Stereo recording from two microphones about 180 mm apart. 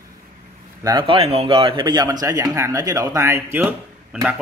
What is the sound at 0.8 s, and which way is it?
A man's voice, 20° right (ahead or behind).